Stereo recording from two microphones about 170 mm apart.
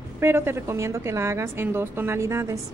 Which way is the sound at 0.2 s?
15° right (ahead or behind).